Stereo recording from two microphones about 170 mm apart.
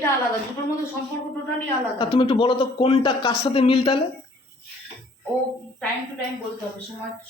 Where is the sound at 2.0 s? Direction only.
30° left (ahead or behind).